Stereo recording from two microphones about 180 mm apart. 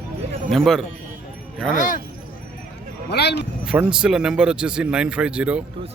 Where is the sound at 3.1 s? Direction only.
65° left (ahead or behind).